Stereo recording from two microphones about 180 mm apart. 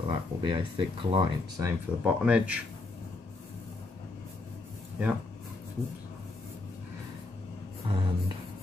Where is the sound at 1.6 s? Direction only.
5° right (ahead or behind).